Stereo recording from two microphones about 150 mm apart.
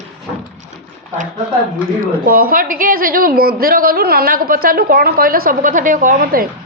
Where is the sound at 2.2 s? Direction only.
75° right (ahead or behind).